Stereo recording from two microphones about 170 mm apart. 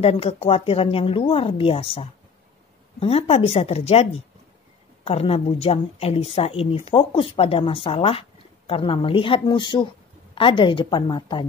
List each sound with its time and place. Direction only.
0.0 s a woman's voice: 35° left (ahead or behind)